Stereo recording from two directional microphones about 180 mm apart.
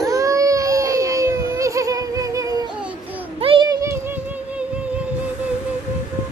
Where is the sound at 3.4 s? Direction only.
25° right (ahead or behind); by 4.6 s 10° right (ahead or behind).